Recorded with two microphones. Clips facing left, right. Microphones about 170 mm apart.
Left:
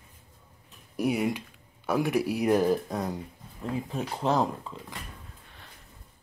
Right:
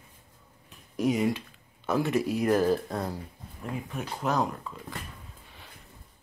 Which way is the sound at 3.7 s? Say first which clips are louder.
Left 3 dB; 30° left (ahead or behind).